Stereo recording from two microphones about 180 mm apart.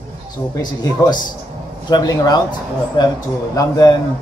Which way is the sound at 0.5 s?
20° left (ahead or behind).